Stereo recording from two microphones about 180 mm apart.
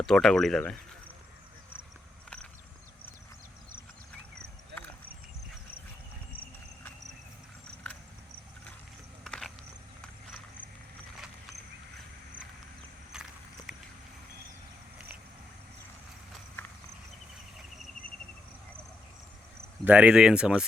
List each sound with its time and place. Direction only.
0.0 s speech: 5° left (ahead or behind)
9.2 s a sound: centre (ahead or behind)
13.1 s walk: 5° right (ahead or behind)
16.6 s horse: 15° left (ahead or behind)
19.8 s speech: 5° right (ahead or behind)